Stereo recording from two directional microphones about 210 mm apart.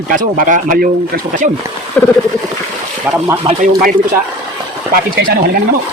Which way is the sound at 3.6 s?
40° right (ahead or behind).